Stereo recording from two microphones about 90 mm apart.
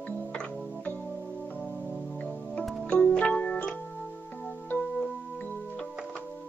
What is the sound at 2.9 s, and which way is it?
Keyboard, 15° left (ahead or behind).